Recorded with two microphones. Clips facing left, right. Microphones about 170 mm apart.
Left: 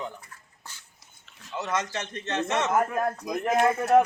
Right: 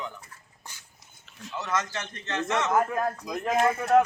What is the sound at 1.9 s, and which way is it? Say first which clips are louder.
Speech: left 2 dB; 20° left (ahead or behind).